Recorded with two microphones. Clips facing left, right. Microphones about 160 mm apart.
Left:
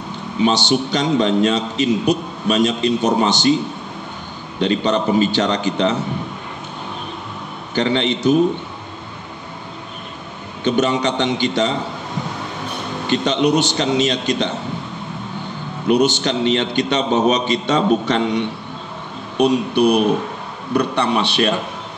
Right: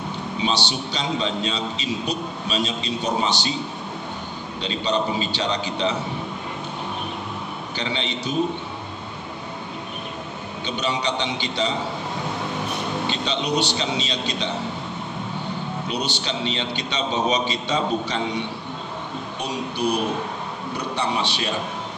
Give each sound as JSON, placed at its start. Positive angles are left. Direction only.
{"t": 0.4, "sound": "a man's voice", "side_deg": 50}
{"t": 4.6, "sound": "a man's voice", "side_deg": 55}
{"t": 7.7, "sound": "a man's voice", "side_deg": 50}
{"t": 10.6, "sound": "a man's voice", "side_deg": 50}
{"t": 13.1, "sound": "a man's voice", "side_deg": 50}
{"t": 15.9, "sound": "a man's voice", "side_deg": 55}
{"t": 19.3, "sound": "a man's voice", "side_deg": 65}